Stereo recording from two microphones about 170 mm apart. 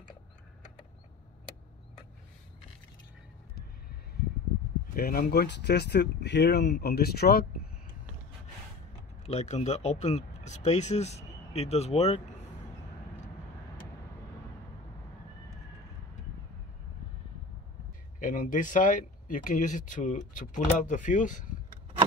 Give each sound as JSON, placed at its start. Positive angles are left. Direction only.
{"t": 4.9, "sound": "speech", "side_deg": 60}
{"t": 9.2, "sound": "speech", "side_deg": 40}
{"t": 18.2, "sound": "speech", "side_deg": 50}